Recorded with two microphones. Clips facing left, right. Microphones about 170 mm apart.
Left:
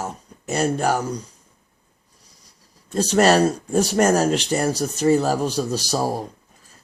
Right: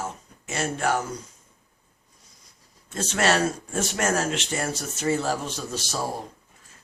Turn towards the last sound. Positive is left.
turn(degrees=40)  # may be behind; listen again after turning